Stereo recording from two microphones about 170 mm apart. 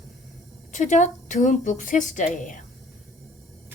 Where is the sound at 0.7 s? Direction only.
45° left (ahead or behind).